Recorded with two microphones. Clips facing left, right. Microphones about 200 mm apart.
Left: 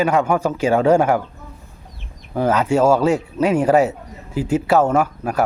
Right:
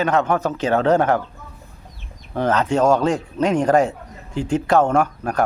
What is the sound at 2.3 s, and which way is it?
Speech, 10° left (ahead or behind).